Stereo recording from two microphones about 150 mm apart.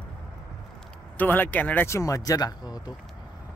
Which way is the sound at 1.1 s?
10° left (ahead or behind).